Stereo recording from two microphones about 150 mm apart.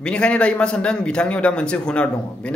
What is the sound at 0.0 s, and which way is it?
A man's voice, 5° left (ahead or behind).